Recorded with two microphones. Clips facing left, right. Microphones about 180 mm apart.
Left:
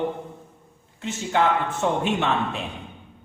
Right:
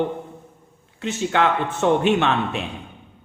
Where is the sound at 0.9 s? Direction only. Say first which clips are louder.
Right 2 dB; 70° right (ahead or behind).